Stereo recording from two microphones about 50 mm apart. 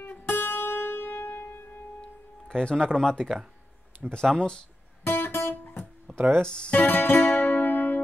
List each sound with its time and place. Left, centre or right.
0.2 s music: left
2.0 s music: centre
3.0 s speech: centre
5.0 s guitar: left
5.6 s music: left
6.1 s music: centre
6.4 s speech: centre
6.8 s music: left
7.2 s music: left
7.4 s music: left